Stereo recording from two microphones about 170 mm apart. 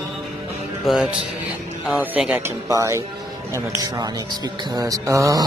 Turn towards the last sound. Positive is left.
turn(degrees=-20)  # may be behind; listen again after turning